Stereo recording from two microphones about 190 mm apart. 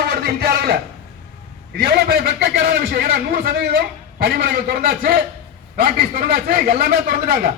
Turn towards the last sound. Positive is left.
turn(degrees=-50)  # may be behind; listen again after turning